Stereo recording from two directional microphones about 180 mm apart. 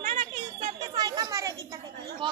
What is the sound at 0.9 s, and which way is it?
Chatter, 20° right (ahead or behind).